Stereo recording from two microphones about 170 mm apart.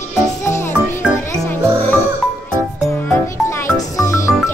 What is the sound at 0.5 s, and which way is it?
Music, 15° left (ahead or behind).